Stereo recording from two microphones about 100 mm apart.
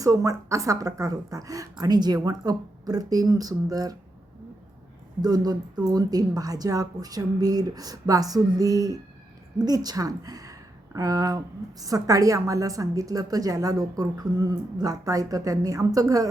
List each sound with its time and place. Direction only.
0.0 s a woman's voice: 35° right (ahead or behind)
5.2 s a woman's voice: 40° right (ahead or behind)